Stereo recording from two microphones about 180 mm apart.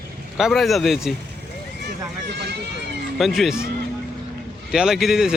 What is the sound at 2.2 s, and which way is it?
Speech, 70° right (ahead or behind).